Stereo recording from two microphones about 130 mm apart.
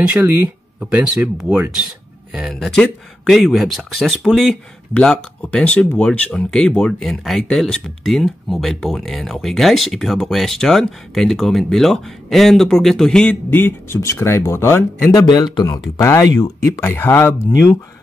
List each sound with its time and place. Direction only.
0.0 s speech: 10° right (ahead or behind); by 15.2 s 20° left (ahead or behind)
15.2 s speech: 35° left (ahead or behind)